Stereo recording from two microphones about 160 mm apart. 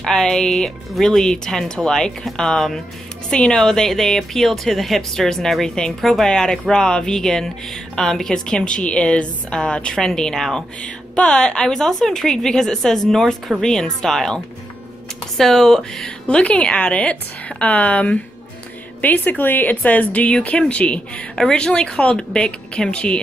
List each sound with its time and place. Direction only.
0.0 s a woman's voice: 5° left (ahead or behind)